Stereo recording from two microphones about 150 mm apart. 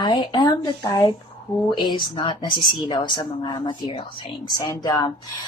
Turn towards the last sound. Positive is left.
turn(degrees=25)  # may be behind; listen again after turning